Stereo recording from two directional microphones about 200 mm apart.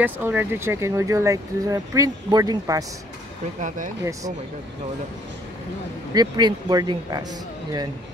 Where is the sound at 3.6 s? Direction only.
40° right (ahead or behind).